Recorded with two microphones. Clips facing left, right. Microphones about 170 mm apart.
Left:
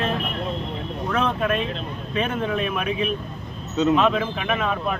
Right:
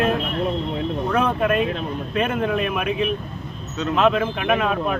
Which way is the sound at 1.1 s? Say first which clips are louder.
Right 2 dB; 10° right (ahead or behind).